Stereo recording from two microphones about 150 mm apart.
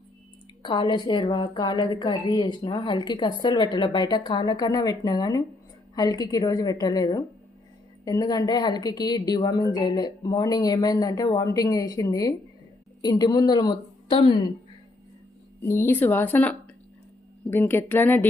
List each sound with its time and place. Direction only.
0.6 s a woman's voice: 30° left (ahead or behind)
15.6 s a woman's voice: 15° left (ahead or behind)